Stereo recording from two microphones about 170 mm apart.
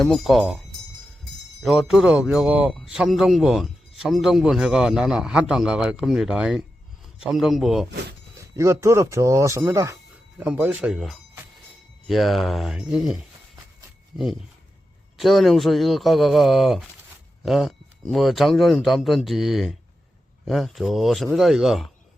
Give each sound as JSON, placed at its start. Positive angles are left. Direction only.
{"t": 0.0, "sound": "speech", "side_deg": 0}
{"t": 1.6, "sound": "speech", "side_deg": 0}
{"t": 8.5, "sound": "speech", "side_deg": -15}